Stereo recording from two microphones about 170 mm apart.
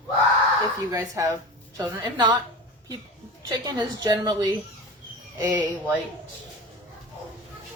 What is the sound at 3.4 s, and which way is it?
A woman's voice, 20° right (ahead or behind).